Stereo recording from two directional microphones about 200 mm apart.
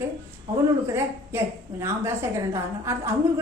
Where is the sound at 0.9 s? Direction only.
15° right (ahead or behind).